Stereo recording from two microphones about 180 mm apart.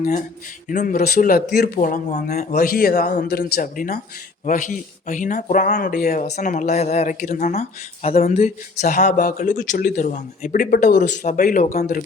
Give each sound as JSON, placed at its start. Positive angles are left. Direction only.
{"t": 0.0, "sound": "speech", "side_deg": 40}
{"t": 2.6, "sound": "speech", "side_deg": 55}